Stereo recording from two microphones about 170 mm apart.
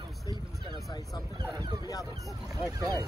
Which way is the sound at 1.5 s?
25° right (ahead or behind).